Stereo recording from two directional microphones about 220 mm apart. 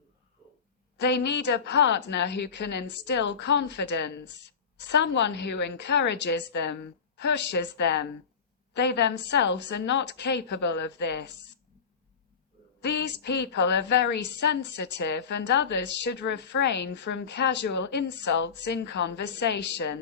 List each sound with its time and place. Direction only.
0.9 s a woman's voice: 50° left (ahead or behind)
12.8 s a woman's voice: 50° left (ahead or behind)